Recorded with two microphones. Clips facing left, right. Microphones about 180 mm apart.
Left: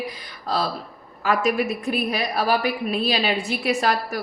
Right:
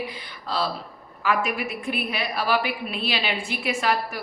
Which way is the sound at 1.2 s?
40° left (ahead or behind).